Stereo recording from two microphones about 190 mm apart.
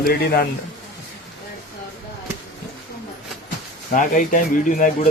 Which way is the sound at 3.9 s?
45° left (ahead or behind).